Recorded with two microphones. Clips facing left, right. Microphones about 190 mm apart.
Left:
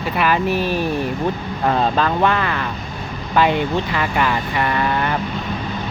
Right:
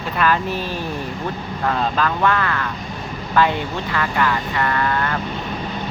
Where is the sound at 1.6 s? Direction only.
25° left (ahead or behind).